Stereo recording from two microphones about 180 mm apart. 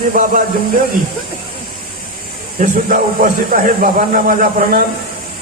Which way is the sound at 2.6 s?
50° right (ahead or behind).